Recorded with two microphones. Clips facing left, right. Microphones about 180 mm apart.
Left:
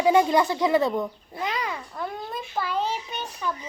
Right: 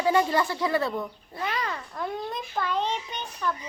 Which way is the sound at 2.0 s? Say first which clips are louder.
Right 2 dB; centre (ahead or behind).